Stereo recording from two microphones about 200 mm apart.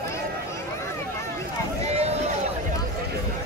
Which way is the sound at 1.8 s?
30° right (ahead or behind).